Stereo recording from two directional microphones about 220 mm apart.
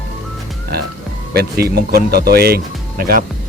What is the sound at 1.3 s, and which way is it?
Speech, 45° right (ahead or behind).